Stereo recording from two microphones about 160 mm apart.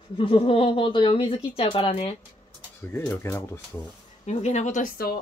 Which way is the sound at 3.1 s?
15° left (ahead or behind).